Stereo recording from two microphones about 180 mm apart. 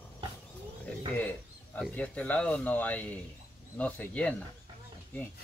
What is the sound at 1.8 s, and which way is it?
Speech, 10° left (ahead or behind).